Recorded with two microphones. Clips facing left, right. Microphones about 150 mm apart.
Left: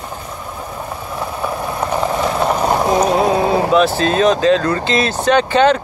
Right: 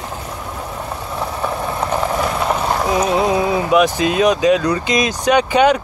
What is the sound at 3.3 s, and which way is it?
Vehicle, 35° left (ahead or behind).